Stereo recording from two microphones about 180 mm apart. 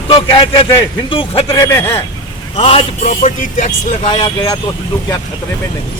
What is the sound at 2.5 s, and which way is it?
Speech, 35° left (ahead or behind).